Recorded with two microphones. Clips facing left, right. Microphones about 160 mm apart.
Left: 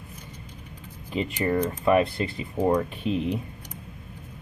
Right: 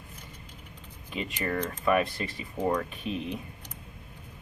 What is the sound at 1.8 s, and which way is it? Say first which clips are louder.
Speech: left 3 dB; 30° left (ahead or behind).